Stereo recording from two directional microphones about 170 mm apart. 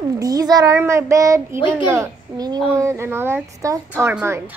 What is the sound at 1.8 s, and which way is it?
A child's voice, 20° right (ahead or behind).